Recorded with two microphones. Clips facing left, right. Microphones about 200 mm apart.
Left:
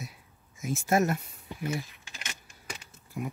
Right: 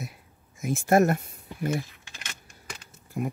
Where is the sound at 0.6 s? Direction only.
55° right (ahead or behind).